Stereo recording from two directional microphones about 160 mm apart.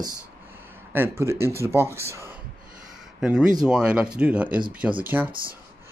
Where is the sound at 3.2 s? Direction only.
5° right (ahead or behind).